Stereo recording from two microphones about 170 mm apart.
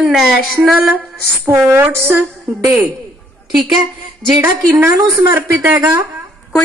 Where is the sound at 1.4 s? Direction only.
15° right (ahead or behind).